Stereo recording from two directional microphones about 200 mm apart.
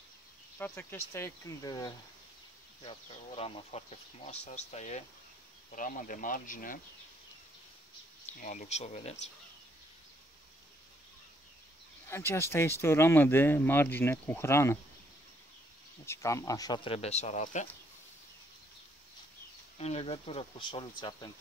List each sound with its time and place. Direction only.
0.6 s speech: 10° left (ahead or behind); by 6.8 s 40° left (ahead or behind)
8.4 s speech: 40° left (ahead or behind)
12.1 s speech: 10° left (ahead or behind)
16.1 s speech: 15° left (ahead or behind); by 17.6 s 35° left (ahead or behind)
19.8 s speech: 30° left (ahead or behind)